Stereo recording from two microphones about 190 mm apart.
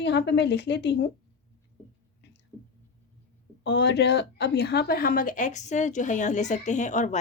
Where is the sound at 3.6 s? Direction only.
65° left (ahead or behind).